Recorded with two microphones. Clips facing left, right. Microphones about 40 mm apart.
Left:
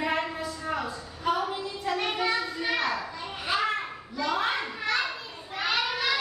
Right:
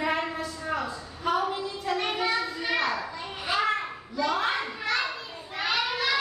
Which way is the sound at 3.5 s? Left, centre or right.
Centre.